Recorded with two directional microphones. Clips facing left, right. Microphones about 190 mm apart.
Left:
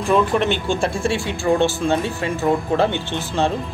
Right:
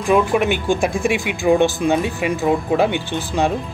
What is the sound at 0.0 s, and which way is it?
Speech, 10° right (ahead or behind).